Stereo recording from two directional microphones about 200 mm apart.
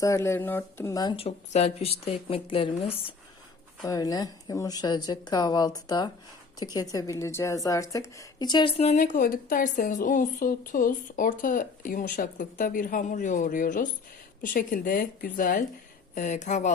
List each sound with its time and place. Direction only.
0.0 s a woman's voice: 15° left (ahead or behind)
3.8 s a woman's voice: 15° left (ahead or behind); by 16.7 s 35° left (ahead or behind)